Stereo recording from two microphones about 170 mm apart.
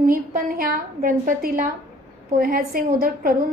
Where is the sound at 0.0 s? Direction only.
55° right (ahead or behind).